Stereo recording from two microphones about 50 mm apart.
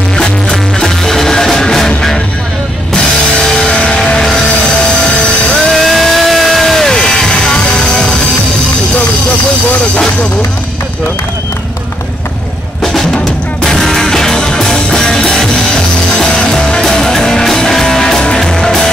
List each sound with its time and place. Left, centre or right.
0.2 s music: centre
5.7 s music: centre
13.6 s music: centre